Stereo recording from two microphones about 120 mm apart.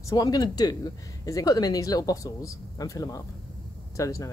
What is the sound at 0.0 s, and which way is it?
Speech, 35° left (ahead or behind).